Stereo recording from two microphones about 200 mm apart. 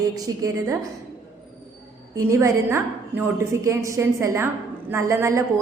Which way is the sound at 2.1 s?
15° right (ahead or behind).